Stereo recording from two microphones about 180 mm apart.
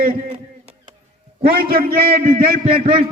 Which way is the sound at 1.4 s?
55° right (ahead or behind).